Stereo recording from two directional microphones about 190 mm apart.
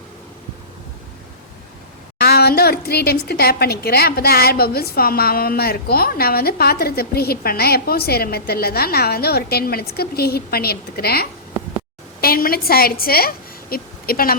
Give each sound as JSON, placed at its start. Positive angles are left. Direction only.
{"t": 2.1, "sound": "a woman's voice", "side_deg": 55}